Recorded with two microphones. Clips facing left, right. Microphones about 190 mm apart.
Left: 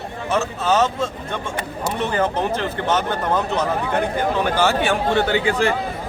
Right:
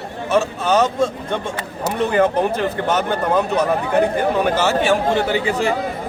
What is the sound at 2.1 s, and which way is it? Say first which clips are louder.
Speech: right 5 dB; 10° right (ahead or behind).